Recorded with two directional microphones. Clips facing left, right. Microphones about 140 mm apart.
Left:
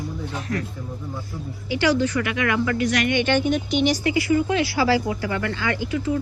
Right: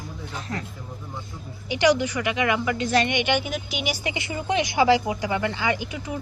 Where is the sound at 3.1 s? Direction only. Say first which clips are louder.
Left 4 dB; 15° right (ahead or behind).